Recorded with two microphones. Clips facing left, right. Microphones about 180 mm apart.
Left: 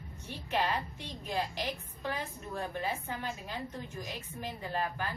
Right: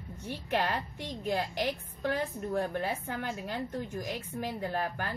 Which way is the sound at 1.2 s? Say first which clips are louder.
Right 4 dB; 60° right (ahead or behind).